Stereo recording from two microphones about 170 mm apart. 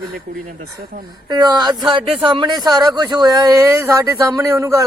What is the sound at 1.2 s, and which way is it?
Speech, 25° right (ahead or behind).